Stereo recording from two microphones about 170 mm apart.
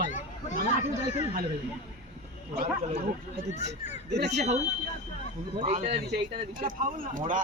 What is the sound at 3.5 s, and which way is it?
Speech, 45° left (ahead or behind).